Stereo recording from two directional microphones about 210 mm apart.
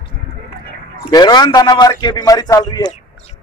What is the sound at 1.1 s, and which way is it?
A man's voice, 20° left (ahead or behind).